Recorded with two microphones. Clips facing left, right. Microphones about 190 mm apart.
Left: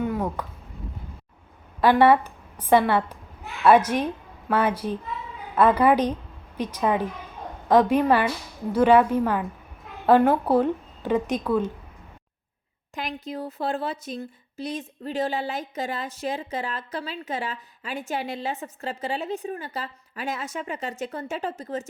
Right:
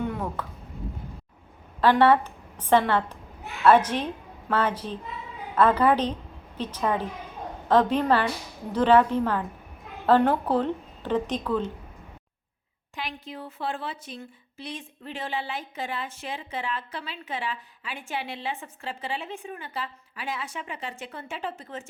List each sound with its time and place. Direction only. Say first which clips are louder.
0.0 s a sound: left 3 dB; 10° left (ahead or behind)
1.8 s a woman's voice: left 2 dB; 10° left (ahead or behind)
13.0 s a woman's voice: left 5 dB; 45° left (ahead or behind)